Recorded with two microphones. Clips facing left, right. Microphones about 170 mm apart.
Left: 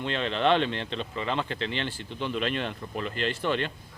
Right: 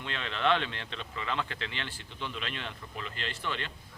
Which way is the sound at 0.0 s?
30° left (ahead or behind).